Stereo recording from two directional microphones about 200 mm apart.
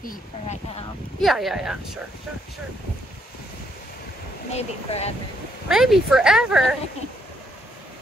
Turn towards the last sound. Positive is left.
turn(degrees=-5)  # may be behind; listen again after turning